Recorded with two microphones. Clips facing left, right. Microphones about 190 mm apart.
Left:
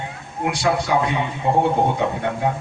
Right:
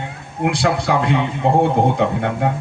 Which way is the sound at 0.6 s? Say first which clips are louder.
Left 1 dB; 65° right (ahead or behind).